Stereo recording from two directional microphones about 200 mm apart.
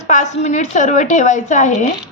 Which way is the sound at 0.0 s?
35° left (ahead or behind).